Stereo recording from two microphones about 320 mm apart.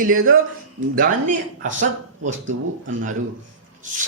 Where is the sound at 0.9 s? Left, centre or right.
Right.